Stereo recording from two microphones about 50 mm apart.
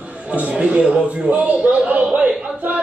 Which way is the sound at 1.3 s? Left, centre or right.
Right.